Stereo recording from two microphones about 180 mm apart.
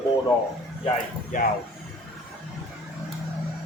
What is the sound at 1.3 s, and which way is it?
Speech, 45° left (ahead or behind).